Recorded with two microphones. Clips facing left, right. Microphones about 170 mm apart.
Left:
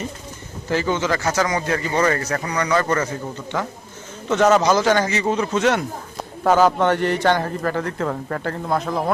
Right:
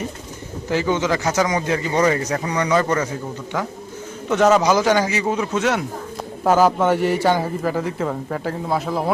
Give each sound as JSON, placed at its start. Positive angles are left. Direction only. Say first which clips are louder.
{"t": 0.7, "sound": "a man's voice", "louder": "right 1 dB", "side_deg": -15}